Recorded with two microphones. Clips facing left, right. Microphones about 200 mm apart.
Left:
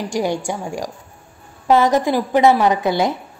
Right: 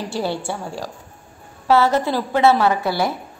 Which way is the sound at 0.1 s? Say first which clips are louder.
Left 4 dB; 15° left (ahead or behind).